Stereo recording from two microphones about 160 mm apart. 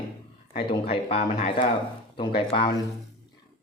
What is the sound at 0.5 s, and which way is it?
Speech, 35° left (ahead or behind).